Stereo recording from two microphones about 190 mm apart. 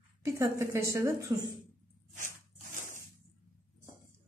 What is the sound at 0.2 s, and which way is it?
Speech, 15° right (ahead or behind).